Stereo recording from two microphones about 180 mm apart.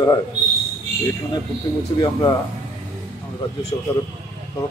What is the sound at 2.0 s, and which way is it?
Speech, 25° left (ahead or behind).